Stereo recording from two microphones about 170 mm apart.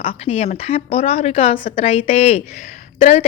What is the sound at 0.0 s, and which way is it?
A woman's voice, 35° left (ahead or behind).